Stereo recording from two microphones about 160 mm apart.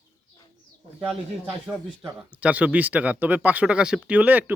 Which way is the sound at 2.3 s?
10° right (ahead or behind).